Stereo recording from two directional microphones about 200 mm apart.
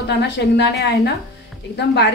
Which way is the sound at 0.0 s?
55° left (ahead or behind).